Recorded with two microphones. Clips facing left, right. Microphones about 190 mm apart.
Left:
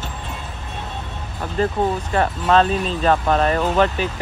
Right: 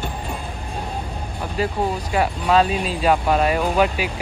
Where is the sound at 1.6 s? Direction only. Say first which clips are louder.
Left 3 dB; 10° right (ahead or behind).